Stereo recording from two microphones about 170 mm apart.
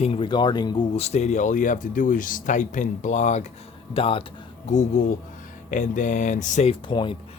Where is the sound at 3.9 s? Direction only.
30° left (ahead or behind).